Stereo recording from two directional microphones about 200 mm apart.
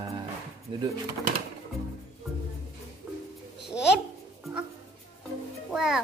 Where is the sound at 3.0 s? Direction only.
5° right (ahead or behind).